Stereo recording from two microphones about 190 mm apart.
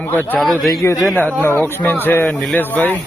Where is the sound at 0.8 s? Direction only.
15° left (ahead or behind).